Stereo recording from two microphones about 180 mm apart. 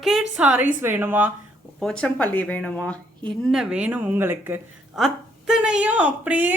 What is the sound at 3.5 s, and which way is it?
A woman's voice, 5° right (ahead or behind).